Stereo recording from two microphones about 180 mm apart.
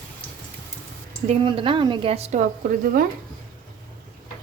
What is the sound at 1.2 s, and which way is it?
Speech, 30° right (ahead or behind).